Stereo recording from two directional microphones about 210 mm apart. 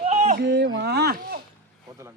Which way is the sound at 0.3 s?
55° right (ahead or behind).